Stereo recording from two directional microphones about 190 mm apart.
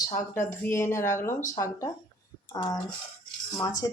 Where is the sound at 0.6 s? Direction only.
15° left (ahead or behind).